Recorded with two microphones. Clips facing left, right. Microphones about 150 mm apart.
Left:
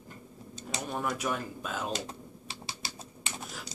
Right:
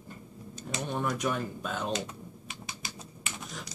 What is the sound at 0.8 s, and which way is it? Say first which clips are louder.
Speech: right 2 dB; 5° left (ahead or behind).